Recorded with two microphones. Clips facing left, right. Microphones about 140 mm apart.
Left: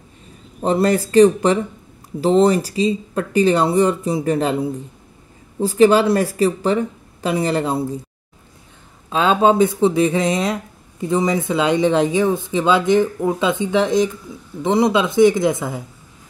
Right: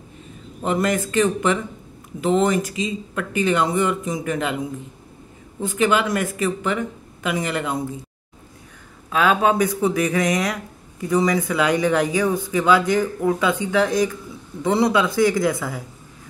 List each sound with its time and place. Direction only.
0.6 s speech: 30° left (ahead or behind)
9.1 s speech: 25° left (ahead or behind)